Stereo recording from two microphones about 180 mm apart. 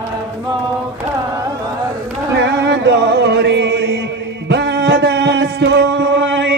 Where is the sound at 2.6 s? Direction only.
70° right (ahead or behind).